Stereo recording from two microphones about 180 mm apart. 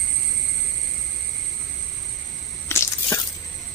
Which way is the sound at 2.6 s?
15° left (ahead or behind).